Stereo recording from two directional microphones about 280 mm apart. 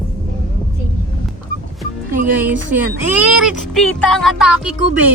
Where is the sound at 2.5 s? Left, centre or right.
Centre.